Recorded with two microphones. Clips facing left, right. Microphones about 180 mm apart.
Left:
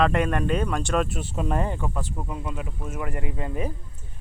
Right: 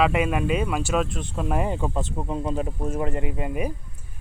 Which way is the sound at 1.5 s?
20° right (ahead or behind).